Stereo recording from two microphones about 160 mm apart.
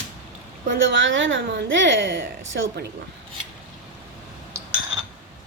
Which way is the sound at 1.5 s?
90° right.